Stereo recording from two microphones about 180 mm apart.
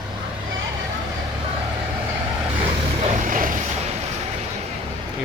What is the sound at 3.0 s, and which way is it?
Vehicle, 45° right (ahead or behind).